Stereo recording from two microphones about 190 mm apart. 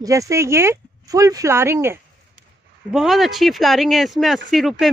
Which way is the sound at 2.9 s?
Centre (ahead or behind).